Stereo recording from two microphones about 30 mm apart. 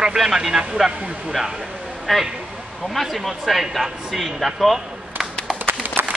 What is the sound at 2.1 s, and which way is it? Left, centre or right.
A man's voice, centre.